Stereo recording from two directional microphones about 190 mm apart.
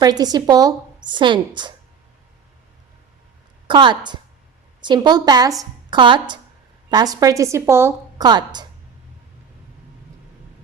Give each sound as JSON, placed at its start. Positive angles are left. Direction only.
{"t": 0.0, "sound": "a woman's voice", "side_deg": -20}
{"t": 3.7, "sound": "a woman's voice", "side_deg": -25}